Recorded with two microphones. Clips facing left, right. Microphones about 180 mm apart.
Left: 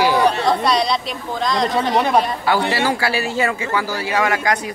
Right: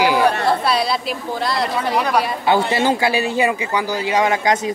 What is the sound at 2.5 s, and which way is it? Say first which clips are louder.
A man's voice: right 2 dB; 20° right (ahead or behind).